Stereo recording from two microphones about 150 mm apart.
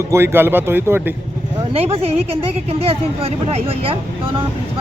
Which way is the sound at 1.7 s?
40° right (ahead or behind).